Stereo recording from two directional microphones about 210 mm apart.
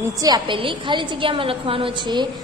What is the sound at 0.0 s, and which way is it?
A woman's voice, 15° right (ahead or behind).